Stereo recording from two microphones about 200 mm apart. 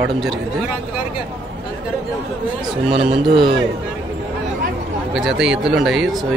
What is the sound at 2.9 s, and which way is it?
Speech, 25° right (ahead or behind).